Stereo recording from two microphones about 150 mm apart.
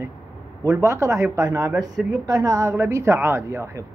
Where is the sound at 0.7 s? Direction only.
20° right (ahead or behind).